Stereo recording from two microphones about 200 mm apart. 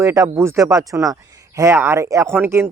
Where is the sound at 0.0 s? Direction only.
15° right (ahead or behind).